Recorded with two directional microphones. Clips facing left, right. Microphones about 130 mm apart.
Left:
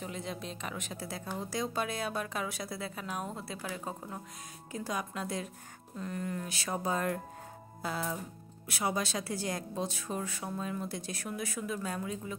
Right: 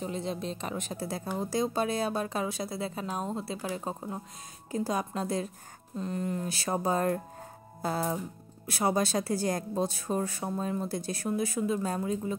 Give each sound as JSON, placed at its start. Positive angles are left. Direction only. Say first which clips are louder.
{"t": 0.0, "sound": "a woman's voice", "louder": "right 6 dB", "side_deg": -30}